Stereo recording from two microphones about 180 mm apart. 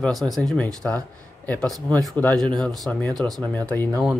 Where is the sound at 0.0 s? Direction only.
Centre (ahead or behind).